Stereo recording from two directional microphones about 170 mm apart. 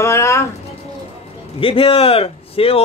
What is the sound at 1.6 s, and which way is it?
Speech, 30° left (ahead or behind).